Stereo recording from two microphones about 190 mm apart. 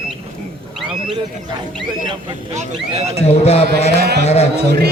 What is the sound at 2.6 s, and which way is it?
Speech, 35° right (ahead or behind).